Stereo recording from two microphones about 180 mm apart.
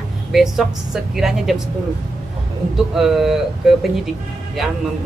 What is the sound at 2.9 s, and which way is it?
Speech, centre (ahead or behind).